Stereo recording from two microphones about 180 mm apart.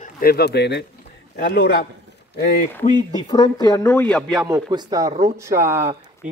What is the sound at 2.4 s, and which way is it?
Speech, 50° left (ahead or behind).